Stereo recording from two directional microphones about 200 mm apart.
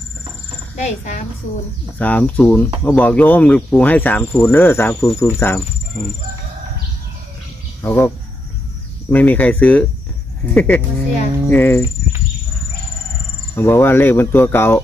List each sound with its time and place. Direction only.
0.7 s a woman's voice: 35° left (ahead or behind)
2.0 s speech: 10° left (ahead or behind)
7.8 s speech: 10° left (ahead or behind)
9.1 s speech: 10° left (ahead or behind)
13.6 s speech: 10° left (ahead or behind)